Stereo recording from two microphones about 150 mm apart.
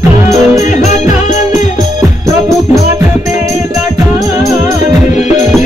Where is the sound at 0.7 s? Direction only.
55° left (ahead or behind).